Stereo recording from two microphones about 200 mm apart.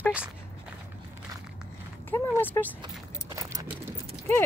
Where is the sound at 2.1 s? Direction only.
10° left (ahead or behind).